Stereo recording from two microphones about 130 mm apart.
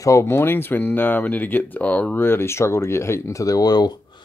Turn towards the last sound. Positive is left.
turn(degrees=30)  # may be behind; listen again after turning